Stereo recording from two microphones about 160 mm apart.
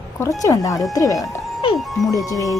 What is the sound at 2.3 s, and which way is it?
Speech, 20° left (ahead or behind).